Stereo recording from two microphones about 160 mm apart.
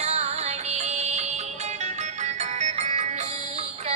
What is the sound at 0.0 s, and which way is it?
Music, 45° right (ahead or behind).